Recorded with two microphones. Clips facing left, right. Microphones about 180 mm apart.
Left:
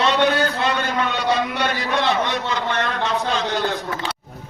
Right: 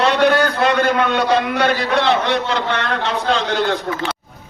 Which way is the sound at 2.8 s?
65° right (ahead or behind).